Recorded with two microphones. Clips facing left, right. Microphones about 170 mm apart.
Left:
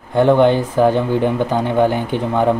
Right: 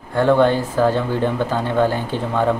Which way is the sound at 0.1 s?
20° left (ahead or behind).